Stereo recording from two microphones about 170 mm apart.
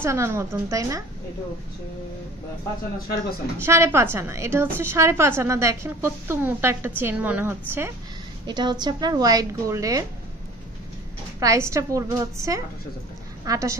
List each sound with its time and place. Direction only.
0.0 s a woman's voice: 15° right (ahead or behind)
3.6 s a woman's voice: 15° right (ahead or behind)
8.5 s speech: 25° right (ahead or behind)
11.3 s a woman's voice: 15° right (ahead or behind)